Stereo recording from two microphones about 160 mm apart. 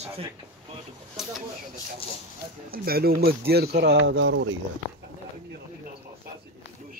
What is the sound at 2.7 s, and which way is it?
Speech, 70° right (ahead or behind).